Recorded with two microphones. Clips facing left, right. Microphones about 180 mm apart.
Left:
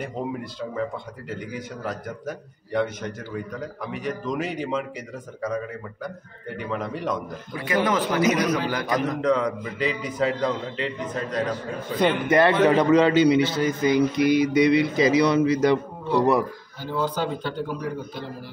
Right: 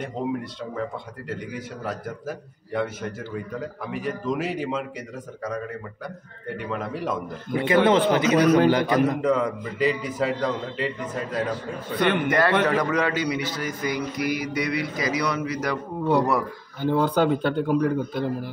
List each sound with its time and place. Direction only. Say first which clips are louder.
0.0 s a man's voice: right 2 dB; centre (ahead or behind)
6.0 s a man's voice: even; centre (ahead or behind)
7.5 s a man's voice: right 5 dB; 25° right (ahead or behind)
8.9 s a man's voice: right 2 dB; 5° right (ahead or behind)
12.3 s a man's voice: left 3 dB; 25° left (ahead or behind)
16.8 s speech: right 5 dB; 60° right (ahead or behind)